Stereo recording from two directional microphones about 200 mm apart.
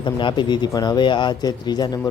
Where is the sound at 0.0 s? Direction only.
25° left (ahead or behind).